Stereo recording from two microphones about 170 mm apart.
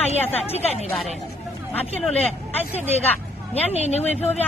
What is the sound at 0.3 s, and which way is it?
Speech, 40° left (ahead or behind).